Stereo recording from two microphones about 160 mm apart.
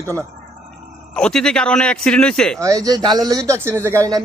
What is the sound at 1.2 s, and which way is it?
A man's voice, 5° left (ahead or behind).